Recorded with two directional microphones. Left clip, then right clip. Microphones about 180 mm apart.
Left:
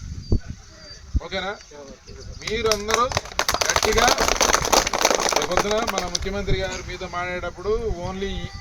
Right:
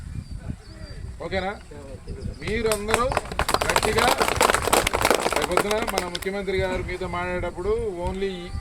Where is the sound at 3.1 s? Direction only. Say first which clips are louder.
Even; 55° left (ahead or behind).